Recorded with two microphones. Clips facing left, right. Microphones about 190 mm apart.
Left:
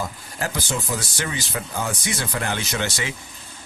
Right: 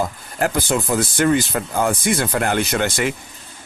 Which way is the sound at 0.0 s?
55° right (ahead or behind).